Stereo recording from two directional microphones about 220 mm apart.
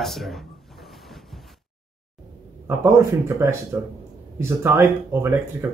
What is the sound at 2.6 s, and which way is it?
Speech, 15° right (ahead or behind).